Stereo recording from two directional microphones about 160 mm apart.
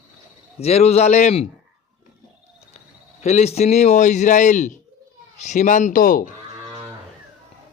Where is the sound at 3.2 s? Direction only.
45° left (ahead or behind); by 6.3 s 60° left (ahead or behind).